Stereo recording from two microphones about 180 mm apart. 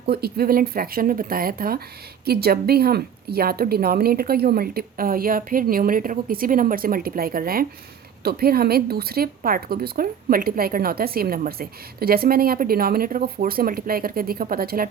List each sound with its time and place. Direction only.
0.0 s speech: 60° right (ahead or behind)